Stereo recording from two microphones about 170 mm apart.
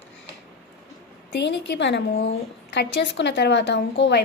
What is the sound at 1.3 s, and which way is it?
A woman's voice, 90° left.